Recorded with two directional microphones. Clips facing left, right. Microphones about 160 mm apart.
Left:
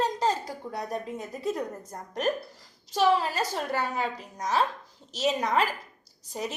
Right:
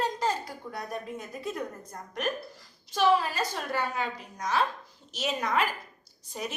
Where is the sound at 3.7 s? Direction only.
40° left (ahead or behind).